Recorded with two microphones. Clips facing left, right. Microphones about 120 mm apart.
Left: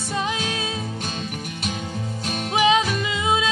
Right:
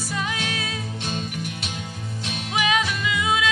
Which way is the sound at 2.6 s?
25° left (ahead or behind).